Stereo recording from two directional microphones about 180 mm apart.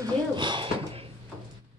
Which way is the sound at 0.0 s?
25° right (ahead or behind).